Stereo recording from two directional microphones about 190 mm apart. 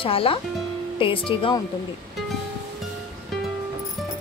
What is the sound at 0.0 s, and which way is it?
A woman's voice, 30° left (ahead or behind).